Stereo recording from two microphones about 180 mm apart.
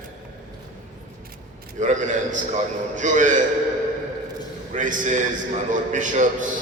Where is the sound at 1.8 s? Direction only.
45° right (ahead or behind).